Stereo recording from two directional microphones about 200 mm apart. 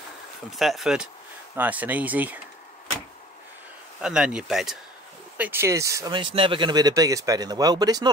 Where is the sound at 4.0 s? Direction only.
5° right (ahead or behind).